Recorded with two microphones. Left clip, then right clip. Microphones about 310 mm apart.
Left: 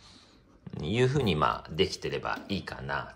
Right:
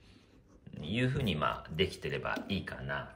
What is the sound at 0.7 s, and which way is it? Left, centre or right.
Speech, centre.